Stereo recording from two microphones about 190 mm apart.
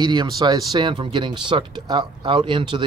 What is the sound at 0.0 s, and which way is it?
Speech, 25° right (ahead or behind).